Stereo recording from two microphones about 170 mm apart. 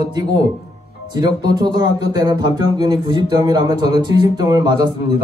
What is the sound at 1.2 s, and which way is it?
A man's voice, 25° right (ahead or behind).